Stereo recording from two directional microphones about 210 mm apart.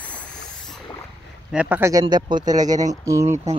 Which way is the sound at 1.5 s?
5° right (ahead or behind).